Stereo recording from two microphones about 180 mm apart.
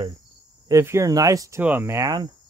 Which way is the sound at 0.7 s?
15° right (ahead or behind).